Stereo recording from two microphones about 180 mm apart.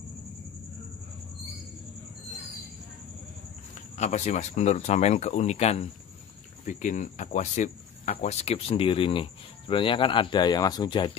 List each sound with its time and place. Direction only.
3.9 s speech: 40° left (ahead or behind)